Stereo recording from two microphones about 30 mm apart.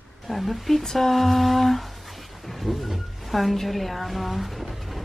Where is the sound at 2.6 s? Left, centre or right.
Centre.